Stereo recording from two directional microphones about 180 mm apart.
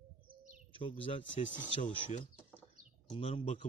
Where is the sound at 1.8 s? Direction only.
30° left (ahead or behind).